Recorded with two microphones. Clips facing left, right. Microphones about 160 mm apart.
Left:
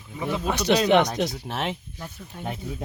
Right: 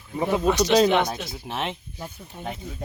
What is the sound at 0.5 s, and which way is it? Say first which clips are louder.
Speech: even; 60° left (ahead or behind).